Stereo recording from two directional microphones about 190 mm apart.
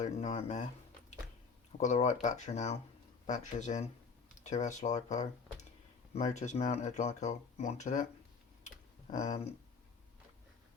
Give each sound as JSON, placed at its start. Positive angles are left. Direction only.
{"t": 0.0, "sound": "speech", "side_deg": 35}
{"t": 1.8, "sound": "speech", "side_deg": 40}
{"t": 8.6, "sound": "tick-tock", "side_deg": 40}